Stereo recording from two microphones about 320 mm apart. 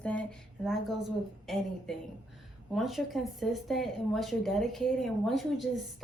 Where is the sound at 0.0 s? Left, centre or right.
Centre.